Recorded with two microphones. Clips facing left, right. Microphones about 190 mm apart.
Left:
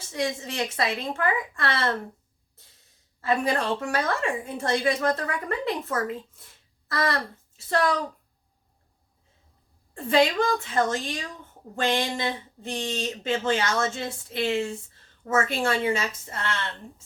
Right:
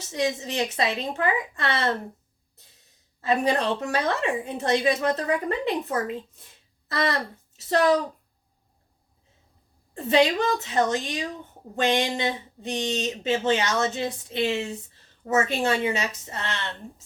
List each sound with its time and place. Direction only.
0.1 s speech: 20° right (ahead or behind)
3.2 s speech: 20° right (ahead or behind)
9.9 s speech: 20° right (ahead or behind)